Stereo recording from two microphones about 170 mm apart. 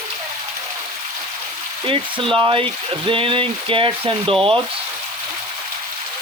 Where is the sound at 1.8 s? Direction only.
30° right (ahead or behind).